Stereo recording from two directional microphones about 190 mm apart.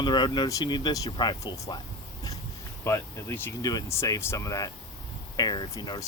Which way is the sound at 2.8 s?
15° left (ahead or behind).